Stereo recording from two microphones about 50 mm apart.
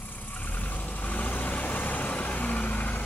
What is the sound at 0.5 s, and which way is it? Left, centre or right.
Vehicle, left.